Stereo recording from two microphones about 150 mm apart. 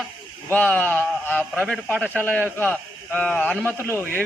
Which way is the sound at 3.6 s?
15° right (ahead or behind).